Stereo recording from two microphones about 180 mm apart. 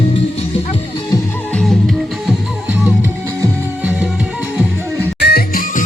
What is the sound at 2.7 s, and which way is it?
Music, 10° right (ahead or behind).